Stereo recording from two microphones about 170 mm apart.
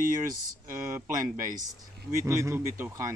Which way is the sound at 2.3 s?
15° right (ahead or behind).